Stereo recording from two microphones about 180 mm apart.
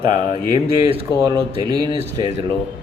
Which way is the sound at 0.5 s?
30° right (ahead or behind).